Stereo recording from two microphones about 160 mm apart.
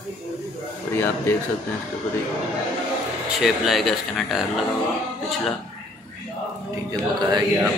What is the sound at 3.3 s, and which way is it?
Speech, centre (ahead or behind).